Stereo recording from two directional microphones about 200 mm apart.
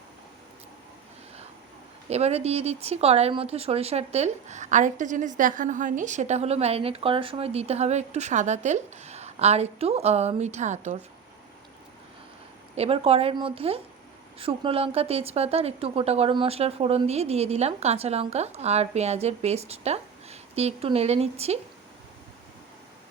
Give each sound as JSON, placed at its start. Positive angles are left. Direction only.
{"t": 2.0, "sound": "speech", "side_deg": -30}
{"t": 12.7, "sound": "speech", "side_deg": -30}